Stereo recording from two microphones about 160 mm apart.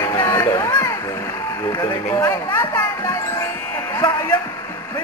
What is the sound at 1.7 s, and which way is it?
Music, 25° left (ahead or behind).